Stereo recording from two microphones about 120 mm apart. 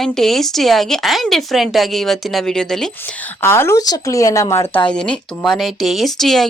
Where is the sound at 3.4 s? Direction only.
20° left (ahead or behind).